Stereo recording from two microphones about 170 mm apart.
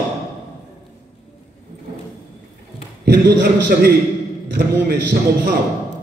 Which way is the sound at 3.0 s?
85° right.